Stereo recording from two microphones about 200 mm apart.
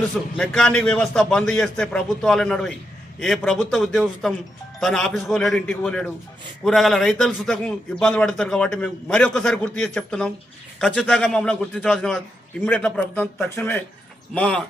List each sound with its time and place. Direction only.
0.3 s a man's voice: 5° left (ahead or behind)